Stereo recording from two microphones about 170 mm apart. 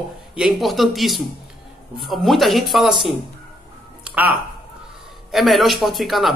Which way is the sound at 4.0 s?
10° right (ahead or behind).